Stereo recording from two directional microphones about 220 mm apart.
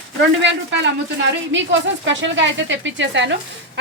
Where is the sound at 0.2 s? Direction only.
55° right (ahead or behind).